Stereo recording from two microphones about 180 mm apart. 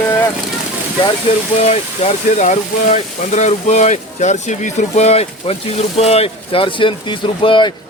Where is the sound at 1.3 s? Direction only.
35° left (ahead or behind).